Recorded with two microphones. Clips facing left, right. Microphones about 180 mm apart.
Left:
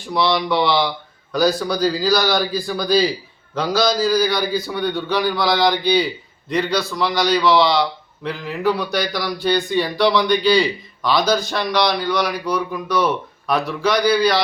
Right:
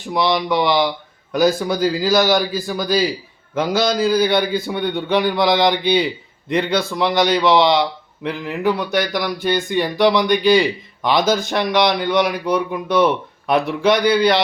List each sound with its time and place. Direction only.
0.1 s speech: 15° right (ahead or behind)